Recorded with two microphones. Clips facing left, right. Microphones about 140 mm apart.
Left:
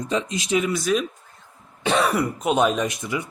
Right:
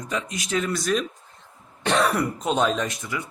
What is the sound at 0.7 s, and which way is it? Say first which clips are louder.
Speech: left 2 dB; 5° left (ahead or behind).